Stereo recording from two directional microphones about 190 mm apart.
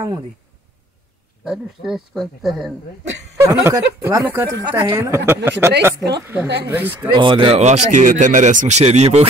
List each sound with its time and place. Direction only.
1.4 s speech: centre (ahead or behind)
3.3 s a woman's voice: 15° right (ahead or behind)
6.4 s speech: 60° right (ahead or behind)
6.7 s a woman's voice: 10° right (ahead or behind)
7.0 s speech: 25° right (ahead or behind)